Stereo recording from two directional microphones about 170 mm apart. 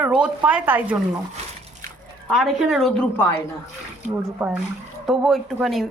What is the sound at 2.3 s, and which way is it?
A woman's voice, centre (ahead or behind).